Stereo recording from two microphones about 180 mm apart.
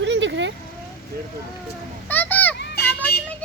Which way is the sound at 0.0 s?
80° right.